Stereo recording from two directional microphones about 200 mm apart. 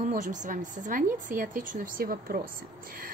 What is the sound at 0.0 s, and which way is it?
A woman's voice, 40° right (ahead or behind).